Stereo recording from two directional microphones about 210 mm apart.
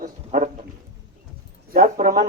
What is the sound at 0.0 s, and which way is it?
Pig, 35° right (ahead or behind).